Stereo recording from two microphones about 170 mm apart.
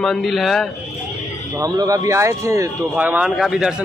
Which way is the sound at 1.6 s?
20° right (ahead or behind).